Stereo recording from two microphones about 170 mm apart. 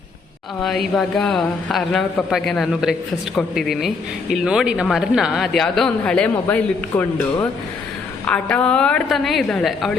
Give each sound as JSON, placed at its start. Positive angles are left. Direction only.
{"t": 0.9, "sound": "speech", "side_deg": 0}